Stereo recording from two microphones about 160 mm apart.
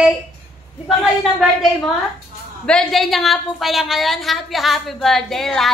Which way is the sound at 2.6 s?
5° left (ahead or behind).